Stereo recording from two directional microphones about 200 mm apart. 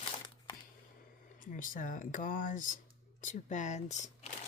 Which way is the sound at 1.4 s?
40° left (ahead or behind).